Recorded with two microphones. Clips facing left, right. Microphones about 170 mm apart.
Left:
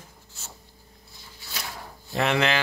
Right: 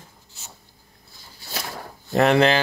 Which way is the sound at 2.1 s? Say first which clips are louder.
Right 7 dB; 40° right (ahead or behind).